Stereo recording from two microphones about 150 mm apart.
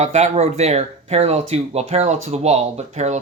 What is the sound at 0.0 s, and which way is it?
Speech, 50° right (ahead or behind).